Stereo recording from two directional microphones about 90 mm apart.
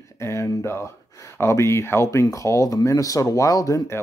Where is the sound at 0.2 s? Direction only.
30° left (ahead or behind).